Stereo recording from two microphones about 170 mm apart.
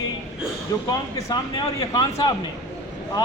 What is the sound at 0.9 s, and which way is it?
Speech, 25° left (ahead or behind).